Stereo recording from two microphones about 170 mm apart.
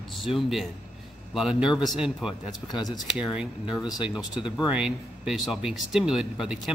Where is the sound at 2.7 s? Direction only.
25° left (ahead or behind).